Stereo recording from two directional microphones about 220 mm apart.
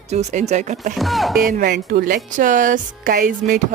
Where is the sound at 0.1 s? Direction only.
30° right (ahead or behind).